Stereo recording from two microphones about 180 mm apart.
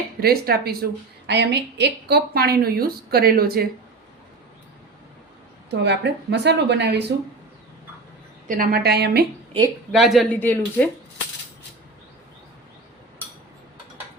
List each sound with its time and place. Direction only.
0.2 s a woman's voice: 60° right (ahead or behind)
1.3 s a woman's voice: 70° right (ahead or behind)
5.8 s speech: 70° right (ahead or behind)
8.4 s a woman's voice: 50° right (ahead or behind)
9.9 s speech: centre (ahead or behind)
10.4 s speech: 10° left (ahead or behind)